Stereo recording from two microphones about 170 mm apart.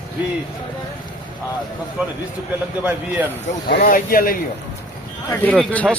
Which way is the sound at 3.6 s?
65° left (ahead or behind).